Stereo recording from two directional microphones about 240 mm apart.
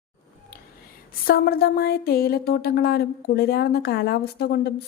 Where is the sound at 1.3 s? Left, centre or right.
Left.